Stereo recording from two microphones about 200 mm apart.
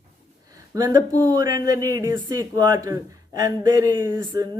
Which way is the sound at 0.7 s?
15° right (ahead or behind).